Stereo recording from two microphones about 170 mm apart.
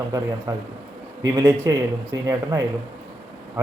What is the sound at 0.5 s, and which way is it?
Speech, 15° right (ahead or behind).